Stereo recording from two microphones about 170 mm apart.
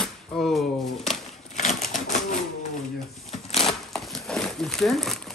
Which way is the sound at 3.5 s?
Centre (ahead or behind).